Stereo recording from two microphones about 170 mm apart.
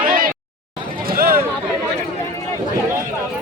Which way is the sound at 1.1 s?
60° right (ahead or behind).